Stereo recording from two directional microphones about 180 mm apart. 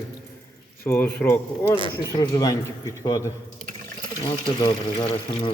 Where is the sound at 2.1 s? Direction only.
20° left (ahead or behind).